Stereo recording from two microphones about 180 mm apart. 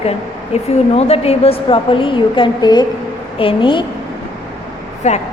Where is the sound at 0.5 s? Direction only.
35° left (ahead or behind).